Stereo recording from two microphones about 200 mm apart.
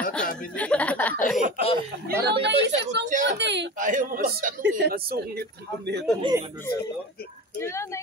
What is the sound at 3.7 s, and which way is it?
A man's voice, 40° right (ahead or behind).